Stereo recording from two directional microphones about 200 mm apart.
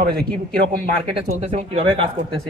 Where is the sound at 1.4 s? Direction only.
35° right (ahead or behind).